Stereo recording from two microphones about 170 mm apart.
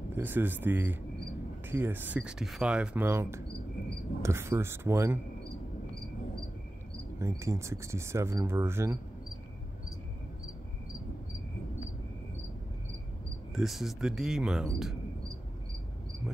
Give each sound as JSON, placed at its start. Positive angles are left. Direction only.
{"t": 0.1, "sound": "speech", "side_deg": -10}
{"t": 7.2, "sound": "speech", "side_deg": -15}
{"t": 13.6, "sound": "speech", "side_deg": 0}